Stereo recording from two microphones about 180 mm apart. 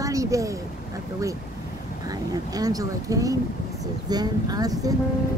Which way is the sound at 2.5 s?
20° right (ahead or behind).